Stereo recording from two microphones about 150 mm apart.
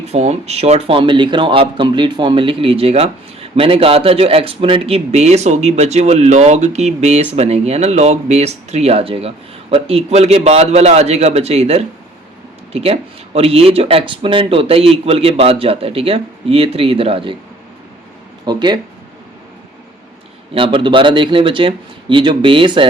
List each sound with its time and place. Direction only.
0.1 s speech: 45° right (ahead or behind)
18.4 s speech: 30° right (ahead or behind)
20.5 s speech: 35° right (ahead or behind)